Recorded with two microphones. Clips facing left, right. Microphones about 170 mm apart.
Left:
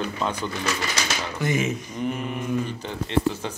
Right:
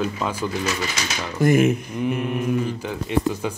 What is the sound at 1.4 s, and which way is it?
Speech, 55° right (ahead or behind).